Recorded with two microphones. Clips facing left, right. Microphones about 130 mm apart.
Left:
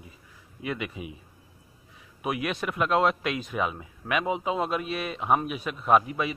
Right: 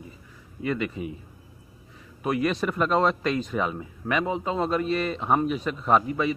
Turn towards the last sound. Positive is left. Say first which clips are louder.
# right 1 dB
turn(degrees=10)  # may be behind; listen again after turning